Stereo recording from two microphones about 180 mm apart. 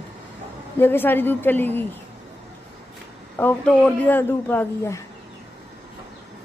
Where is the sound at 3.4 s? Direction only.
10° left (ahead or behind).